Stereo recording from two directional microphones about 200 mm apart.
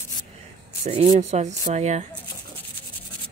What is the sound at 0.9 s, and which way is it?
Speech, 30° right (ahead or behind).